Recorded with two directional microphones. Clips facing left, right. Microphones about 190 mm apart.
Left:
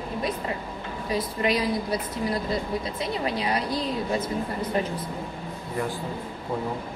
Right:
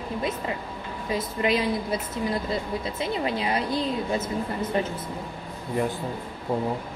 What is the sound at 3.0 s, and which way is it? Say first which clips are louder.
Speech: right 3 dB; 25° right (ahead or behind).